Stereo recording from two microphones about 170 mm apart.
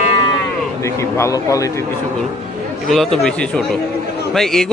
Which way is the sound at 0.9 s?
15° left (ahead or behind).